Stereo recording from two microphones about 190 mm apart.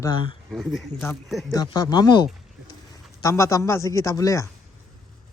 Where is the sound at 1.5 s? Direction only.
20° left (ahead or behind).